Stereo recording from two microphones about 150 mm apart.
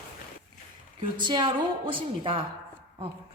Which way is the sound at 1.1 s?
30° right (ahead or behind).